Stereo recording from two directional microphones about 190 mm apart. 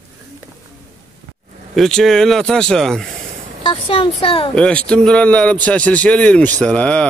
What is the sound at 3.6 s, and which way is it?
Speech, 25° left (ahead or behind).